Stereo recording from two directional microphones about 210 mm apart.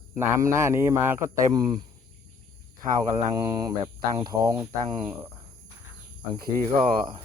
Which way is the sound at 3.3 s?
20° right (ahead or behind).